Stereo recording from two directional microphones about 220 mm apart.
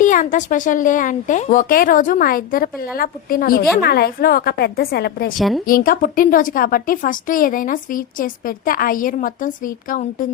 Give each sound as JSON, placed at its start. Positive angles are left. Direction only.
{"t": 0.0, "sound": "a woman's voice", "side_deg": 35}
{"t": 5.4, "sound": "speech", "side_deg": 0}
{"t": 5.6, "sound": "a woman's voice", "side_deg": 40}